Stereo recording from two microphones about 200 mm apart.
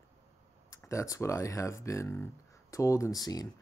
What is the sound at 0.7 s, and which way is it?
Speech, 15° left (ahead or behind).